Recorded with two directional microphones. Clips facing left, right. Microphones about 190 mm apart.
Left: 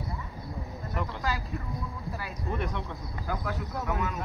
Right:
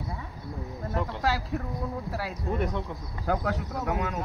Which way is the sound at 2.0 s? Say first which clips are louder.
Right 4 dB; 80° right.